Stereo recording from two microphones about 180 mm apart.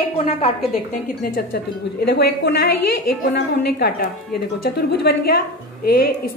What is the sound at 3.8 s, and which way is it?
Speech, 60° left (ahead or behind).